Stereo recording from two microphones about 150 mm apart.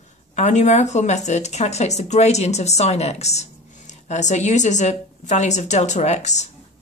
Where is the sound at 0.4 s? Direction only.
50° left (ahead or behind).